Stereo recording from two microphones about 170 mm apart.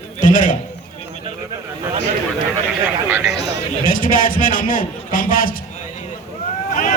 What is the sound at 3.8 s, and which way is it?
A man's voice, 55° left (ahead or behind).